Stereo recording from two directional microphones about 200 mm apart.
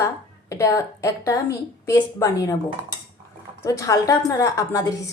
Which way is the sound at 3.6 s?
15° left (ahead or behind).